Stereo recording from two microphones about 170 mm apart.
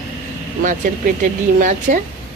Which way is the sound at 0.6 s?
50° right (ahead or behind).